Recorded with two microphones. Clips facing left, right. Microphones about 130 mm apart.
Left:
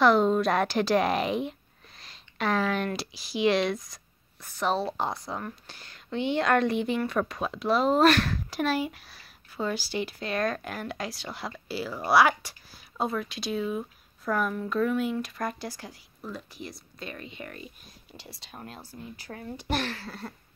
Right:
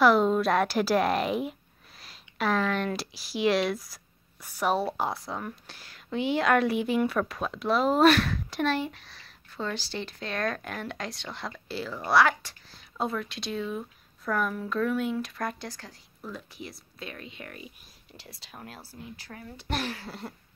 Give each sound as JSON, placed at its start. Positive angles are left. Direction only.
{"t": 0.0, "sound": "a woman's voice", "side_deg": -5}